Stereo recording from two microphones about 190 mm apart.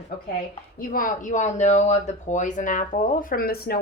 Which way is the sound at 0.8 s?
45° left (ahead or behind).